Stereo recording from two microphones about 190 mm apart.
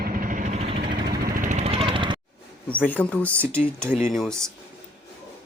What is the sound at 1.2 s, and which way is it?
Vehicle, 45° right (ahead or behind).